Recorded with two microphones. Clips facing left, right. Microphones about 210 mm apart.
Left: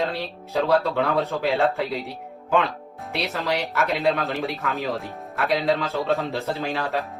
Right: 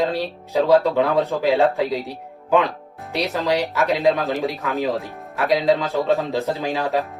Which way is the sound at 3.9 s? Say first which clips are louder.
Right 5 dB; 15° right (ahead or behind).